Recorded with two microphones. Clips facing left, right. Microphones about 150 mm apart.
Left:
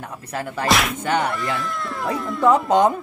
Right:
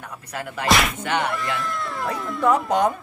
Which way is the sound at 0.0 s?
30° left (ahead or behind).